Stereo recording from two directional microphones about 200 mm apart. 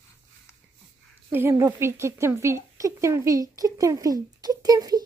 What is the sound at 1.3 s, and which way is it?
A woman's voice, 15° right (ahead or behind).